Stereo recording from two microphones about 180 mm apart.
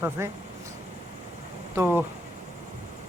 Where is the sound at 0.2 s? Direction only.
15° right (ahead or behind).